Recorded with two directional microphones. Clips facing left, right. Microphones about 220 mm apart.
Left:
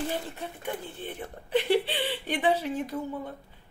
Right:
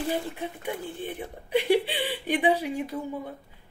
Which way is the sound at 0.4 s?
10° right (ahead or behind).